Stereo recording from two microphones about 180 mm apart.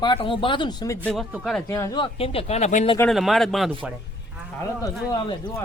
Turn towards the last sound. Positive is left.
turn(degrees=25)  # may be behind; listen again after turning